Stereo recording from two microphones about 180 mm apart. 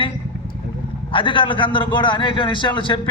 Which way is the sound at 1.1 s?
25° left (ahead or behind).